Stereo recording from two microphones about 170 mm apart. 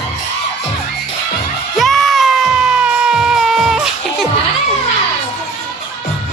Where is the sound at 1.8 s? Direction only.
Centre (ahead or behind).